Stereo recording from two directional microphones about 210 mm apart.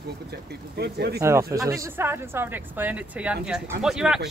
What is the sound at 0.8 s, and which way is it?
Speech, 50° right (ahead or behind).